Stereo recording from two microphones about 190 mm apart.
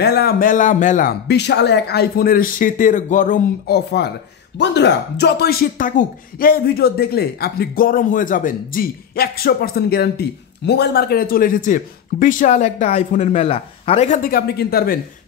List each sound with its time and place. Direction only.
0.0 s speech: 55° left (ahead or behind)
1.2 s speech: 60° left (ahead or behind)